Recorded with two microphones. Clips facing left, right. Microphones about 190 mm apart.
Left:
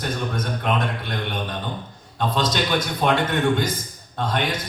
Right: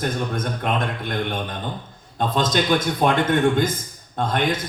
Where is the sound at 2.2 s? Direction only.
50° right (ahead or behind).